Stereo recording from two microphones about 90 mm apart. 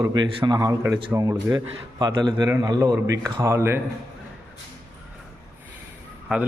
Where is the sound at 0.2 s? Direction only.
50° right (ahead or behind).